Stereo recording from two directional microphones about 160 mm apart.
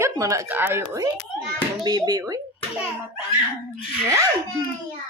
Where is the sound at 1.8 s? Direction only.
25° right (ahead or behind).